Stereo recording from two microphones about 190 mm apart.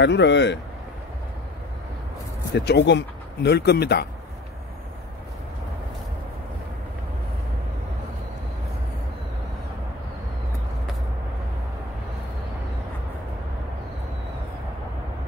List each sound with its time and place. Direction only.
0.0 s speech: 65° left (ahead or behind)
2.5 s speech: 65° left (ahead or behind)